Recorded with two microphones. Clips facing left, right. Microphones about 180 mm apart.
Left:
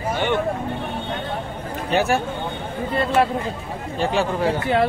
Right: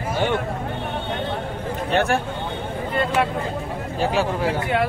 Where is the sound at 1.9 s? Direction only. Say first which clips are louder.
Left 1 dB; 5° left (ahead or behind).